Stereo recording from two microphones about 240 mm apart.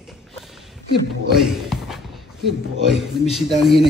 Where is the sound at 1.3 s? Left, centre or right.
Centre.